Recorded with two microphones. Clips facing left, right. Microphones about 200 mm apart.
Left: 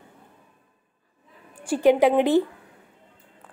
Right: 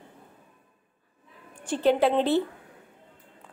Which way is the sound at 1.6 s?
10° left (ahead or behind).